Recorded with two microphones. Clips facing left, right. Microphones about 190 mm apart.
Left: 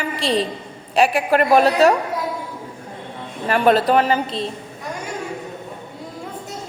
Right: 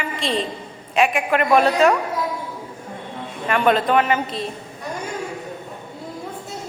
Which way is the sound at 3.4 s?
35° left (ahead or behind).